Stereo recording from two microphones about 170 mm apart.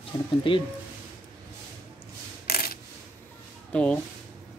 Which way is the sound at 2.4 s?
60° left (ahead or behind).